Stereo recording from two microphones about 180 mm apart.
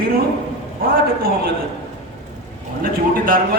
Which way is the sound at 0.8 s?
55° right (ahead or behind).